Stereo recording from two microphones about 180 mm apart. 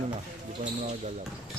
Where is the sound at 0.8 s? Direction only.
40° right (ahead or behind).